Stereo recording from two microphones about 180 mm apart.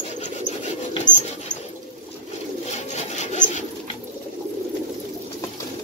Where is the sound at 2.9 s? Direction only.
40° left (ahead or behind).